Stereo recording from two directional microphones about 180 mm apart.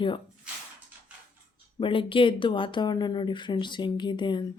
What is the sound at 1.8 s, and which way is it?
Speech, 30° left (ahead or behind).